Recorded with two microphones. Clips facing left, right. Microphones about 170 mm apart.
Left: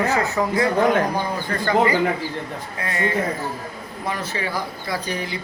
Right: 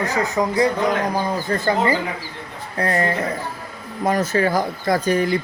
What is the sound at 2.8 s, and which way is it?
A man's voice, 40° right (ahead or behind).